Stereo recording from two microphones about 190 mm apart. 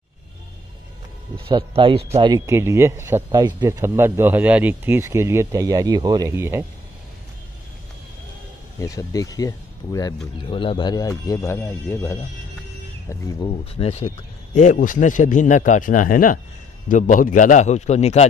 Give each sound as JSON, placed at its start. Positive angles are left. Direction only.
{"t": 1.3, "sound": "speech", "side_deg": -25}
{"t": 8.7, "sound": "speech", "side_deg": 15}
{"t": 13.7, "sound": "a man's voice", "side_deg": 30}